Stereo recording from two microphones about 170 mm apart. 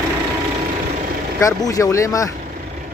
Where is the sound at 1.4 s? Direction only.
20° left (ahead or behind).